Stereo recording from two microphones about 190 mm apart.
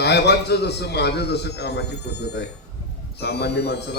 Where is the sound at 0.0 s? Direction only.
60° left (ahead or behind).